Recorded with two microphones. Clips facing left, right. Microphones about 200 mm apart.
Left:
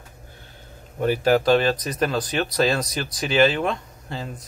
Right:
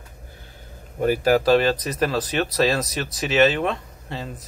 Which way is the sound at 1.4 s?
30° right (ahead or behind).